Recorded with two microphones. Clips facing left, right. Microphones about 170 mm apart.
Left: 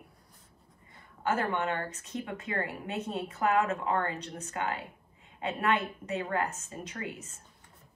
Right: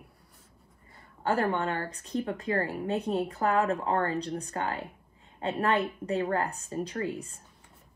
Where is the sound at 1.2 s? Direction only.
35° right (ahead or behind).